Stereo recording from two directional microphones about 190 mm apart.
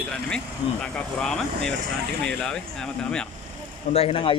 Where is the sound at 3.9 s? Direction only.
30° left (ahead or behind).